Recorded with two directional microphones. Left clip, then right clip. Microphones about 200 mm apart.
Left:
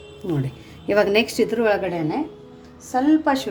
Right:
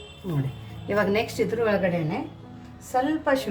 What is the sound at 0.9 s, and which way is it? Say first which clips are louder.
Speech: left 6 dB; 45° left (ahead or behind).